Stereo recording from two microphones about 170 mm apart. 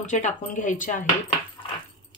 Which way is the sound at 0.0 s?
45° left (ahead or behind).